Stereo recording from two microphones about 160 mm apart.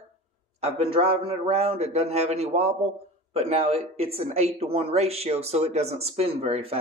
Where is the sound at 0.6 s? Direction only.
40° right (ahead or behind).